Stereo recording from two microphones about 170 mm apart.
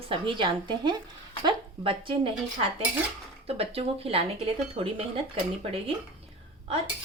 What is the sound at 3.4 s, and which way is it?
A woman's voice, 35° right (ahead or behind).